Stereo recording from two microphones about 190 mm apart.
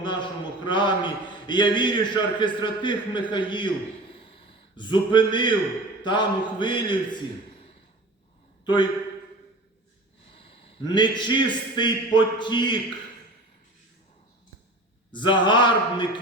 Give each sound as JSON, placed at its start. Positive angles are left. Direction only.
{"t": 0.0, "sound": "a man's voice", "side_deg": 25}
{"t": 4.1, "sound": "a sound", "side_deg": 30}
{"t": 6.0, "sound": "a man's voice", "side_deg": 25}
{"t": 10.3, "sound": "a sound", "side_deg": 25}
{"t": 11.2, "sound": "a man's voice", "side_deg": 25}
{"t": 15.1, "sound": "a man's voice", "side_deg": 25}